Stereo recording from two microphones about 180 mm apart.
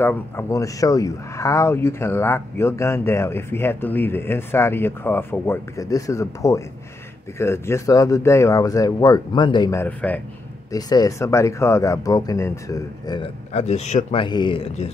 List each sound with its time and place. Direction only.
0.0 s speech: 10° left (ahead or behind)
9.8 s speech: 10° left (ahead or behind)
10.7 s speech: 20° left (ahead or behind)
13.5 s speech: 35° left (ahead or behind)
14.2 s speech: 25° left (ahead or behind)